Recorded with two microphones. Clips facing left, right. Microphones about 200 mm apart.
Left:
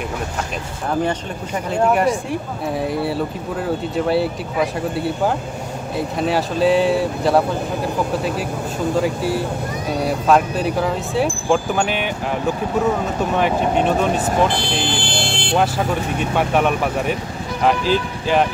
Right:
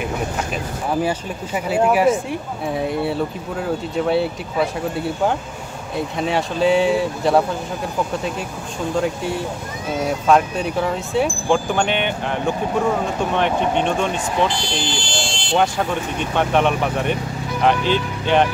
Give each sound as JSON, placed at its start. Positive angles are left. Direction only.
{"t": 1.7, "sound": "speech", "side_deg": -5}
{"t": 5.9, "sound": "speech", "side_deg": 0}
{"t": 13.4, "sound": "speech", "side_deg": 5}
{"t": 14.1, "sound": "speech", "side_deg": 40}
{"t": 14.5, "sound": "speech", "side_deg": 60}
{"t": 16.3, "sound": "speech", "side_deg": 5}